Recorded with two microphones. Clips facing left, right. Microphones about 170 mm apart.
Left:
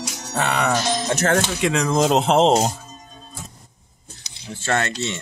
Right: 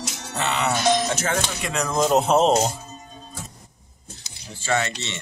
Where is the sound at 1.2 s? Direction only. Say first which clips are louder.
Left 6 dB; 75° left (ahead or behind).